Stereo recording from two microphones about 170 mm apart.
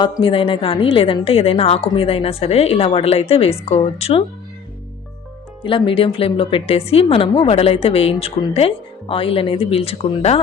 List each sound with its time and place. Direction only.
0.2 s a woman's voice: 30° left (ahead or behind)
5.6 s a woman's voice: 30° left (ahead or behind)